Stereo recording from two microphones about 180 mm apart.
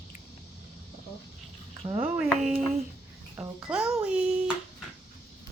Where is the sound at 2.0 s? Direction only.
5° right (ahead or behind).